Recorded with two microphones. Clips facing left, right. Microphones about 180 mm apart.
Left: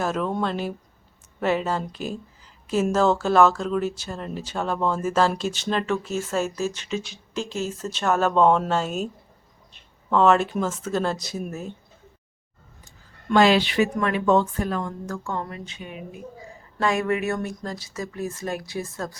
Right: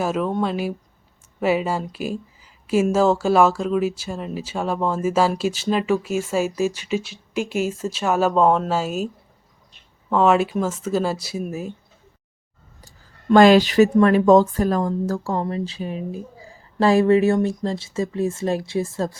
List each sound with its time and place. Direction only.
0.0 s speech: 5° right (ahead or behind)
10.1 s speech: 5° right (ahead or behind)
13.3 s speech: 45° right (ahead or behind); by 19.1 s 25° right (ahead or behind)